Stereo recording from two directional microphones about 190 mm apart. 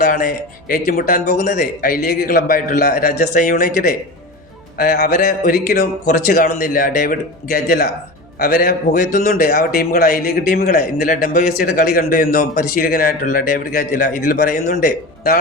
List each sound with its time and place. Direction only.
0.0 s a man's voice: 50° left (ahead or behind)